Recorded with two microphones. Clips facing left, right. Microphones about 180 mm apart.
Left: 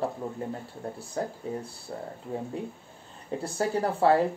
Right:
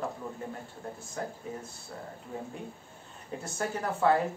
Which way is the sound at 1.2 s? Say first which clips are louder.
Left 6 dB; 30° left (ahead or behind).